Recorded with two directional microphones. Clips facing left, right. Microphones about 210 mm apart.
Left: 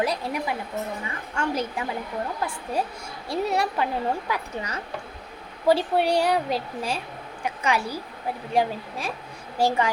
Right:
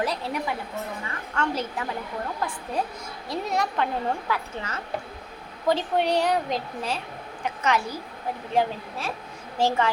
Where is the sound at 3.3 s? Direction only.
10° left (ahead or behind).